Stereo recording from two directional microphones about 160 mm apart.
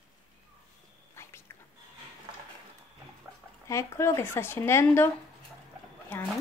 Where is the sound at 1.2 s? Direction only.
15° left (ahead or behind).